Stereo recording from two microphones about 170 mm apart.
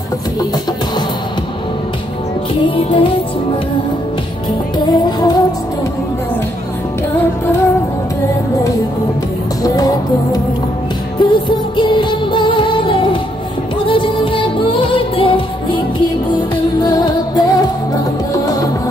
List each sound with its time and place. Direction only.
2.6 s music: 30° left (ahead or behind)
4.7 s music: 25° left (ahead or behind)
9.6 s music: 20° left (ahead or behind)
16.9 s music: 20° left (ahead or behind)